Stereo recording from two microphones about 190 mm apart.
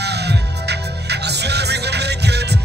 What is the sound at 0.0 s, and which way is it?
Music, 60° right (ahead or behind).